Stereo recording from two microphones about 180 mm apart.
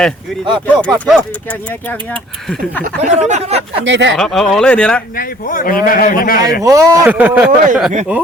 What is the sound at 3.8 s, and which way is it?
Speech, 85° right.